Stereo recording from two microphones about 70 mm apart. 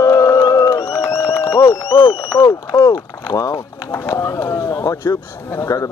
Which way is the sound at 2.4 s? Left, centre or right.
Left.